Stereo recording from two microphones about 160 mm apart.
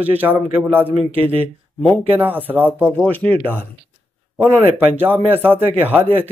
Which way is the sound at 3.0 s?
10° left (ahead or behind).